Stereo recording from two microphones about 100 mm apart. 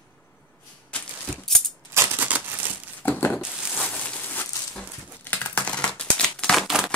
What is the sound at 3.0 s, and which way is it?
Crumpling, 20° left (ahead or behind).